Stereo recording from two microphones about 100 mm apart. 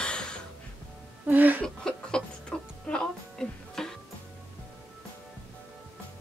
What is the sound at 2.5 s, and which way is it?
Music, 10° left (ahead or behind).